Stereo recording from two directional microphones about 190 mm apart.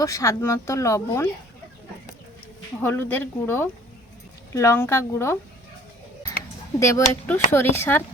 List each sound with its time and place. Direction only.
0.0 s speech: 15° left (ahead or behind)
2.8 s speech: 10° left (ahead or behind)
6.7 s speech: 15° left (ahead or behind)